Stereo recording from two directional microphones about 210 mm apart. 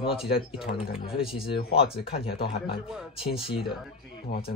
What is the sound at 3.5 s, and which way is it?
Speech, centre (ahead or behind).